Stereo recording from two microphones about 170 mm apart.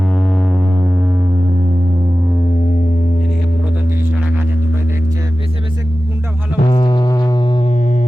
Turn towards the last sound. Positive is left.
turn(degrees=25)  # may be behind; listen again after turning